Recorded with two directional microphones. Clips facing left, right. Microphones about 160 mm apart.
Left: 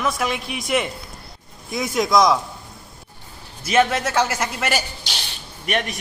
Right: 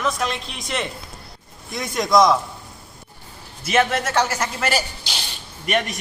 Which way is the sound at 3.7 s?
5° left (ahead or behind).